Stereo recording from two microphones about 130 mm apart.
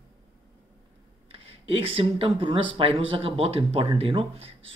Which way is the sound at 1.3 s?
45° right (ahead or behind).